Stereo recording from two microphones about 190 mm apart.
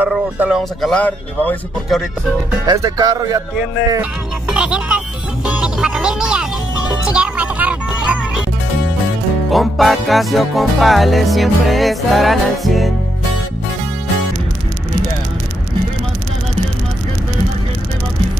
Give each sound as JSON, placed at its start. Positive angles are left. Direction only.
{"t": 0.0, "sound": "music", "side_deg": -5}
{"t": 2.6, "sound": "speech", "side_deg": -20}
{"t": 3.9, "sound": "music", "side_deg": -5}
{"t": 9.5, "sound": "music", "side_deg": 0}